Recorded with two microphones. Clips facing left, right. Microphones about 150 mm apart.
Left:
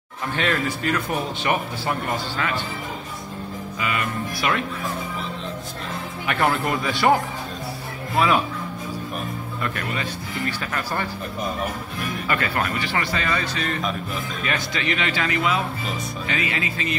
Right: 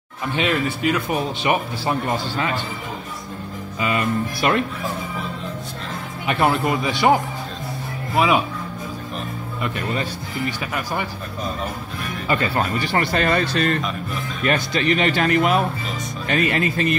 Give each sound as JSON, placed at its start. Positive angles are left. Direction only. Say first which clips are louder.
{"t": 0.4, "sound": "speech", "louder": "right 3 dB", "side_deg": -15}
{"t": 4.4, "sound": "speech", "louder": "right 4 dB", "side_deg": -40}
{"t": 6.2, "sound": "speech", "louder": "right 3 dB", "side_deg": -20}
{"t": 10.4, "sound": "speech", "louder": "right 2 dB", "side_deg": -10}
{"t": 12.3, "sound": "speech", "louder": "right 4 dB", "side_deg": -25}
{"t": 12.8, "sound": "speech", "louder": "right 5 dB", "side_deg": -45}
{"t": 14.4, "sound": "speech", "louder": "right 8 dB", "side_deg": -40}